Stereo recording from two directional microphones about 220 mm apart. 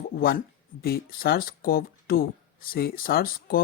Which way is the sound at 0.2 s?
45° left (ahead or behind).